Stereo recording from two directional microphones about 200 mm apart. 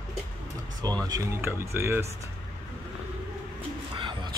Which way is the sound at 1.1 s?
15° right (ahead or behind).